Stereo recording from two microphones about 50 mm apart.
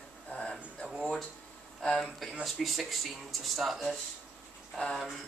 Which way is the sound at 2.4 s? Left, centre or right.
Centre.